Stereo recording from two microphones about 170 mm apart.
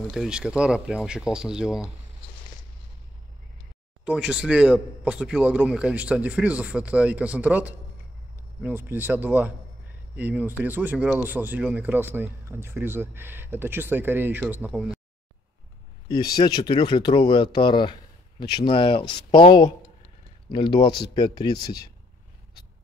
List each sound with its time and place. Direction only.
0.1 s speech: 5° right (ahead or behind)
4.0 s speech: 5° right (ahead or behind)
16.3 s speech: 25° left (ahead or behind)